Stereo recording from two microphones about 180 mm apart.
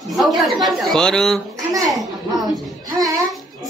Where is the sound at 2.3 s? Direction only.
20° right (ahead or behind).